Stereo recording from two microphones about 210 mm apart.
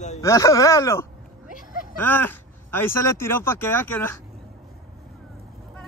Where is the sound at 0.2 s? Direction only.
15° left (ahead or behind).